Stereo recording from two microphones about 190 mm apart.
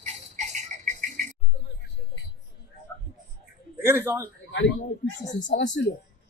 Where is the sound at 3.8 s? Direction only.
10° right (ahead or behind).